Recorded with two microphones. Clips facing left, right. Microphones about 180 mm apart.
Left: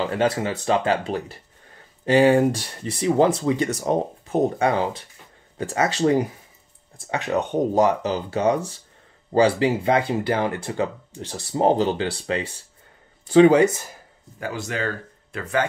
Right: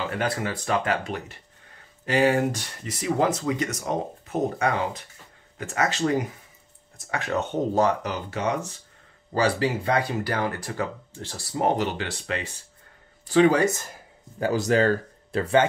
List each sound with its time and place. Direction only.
0.0 s speech: 25° left (ahead or behind)
7.0 s speech: 20° left (ahead or behind)
14.4 s speech: 35° right (ahead or behind)